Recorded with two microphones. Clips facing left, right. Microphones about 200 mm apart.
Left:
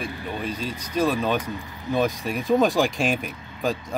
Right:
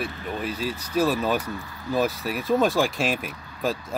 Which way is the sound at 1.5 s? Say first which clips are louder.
Left 1 dB; 20° left (ahead or behind).